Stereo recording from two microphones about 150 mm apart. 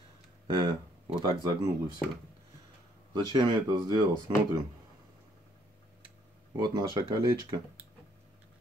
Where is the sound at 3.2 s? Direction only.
30° right (ahead or behind).